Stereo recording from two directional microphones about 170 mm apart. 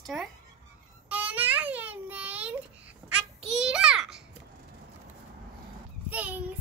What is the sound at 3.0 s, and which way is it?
Babbling, 5° right (ahead or behind).